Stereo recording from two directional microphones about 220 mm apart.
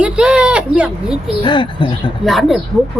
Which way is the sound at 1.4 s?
20° left (ahead or behind).